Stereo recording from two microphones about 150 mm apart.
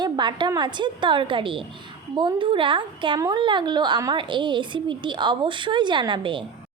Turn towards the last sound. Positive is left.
turn(degrees=-35)  # may be behind; listen again after turning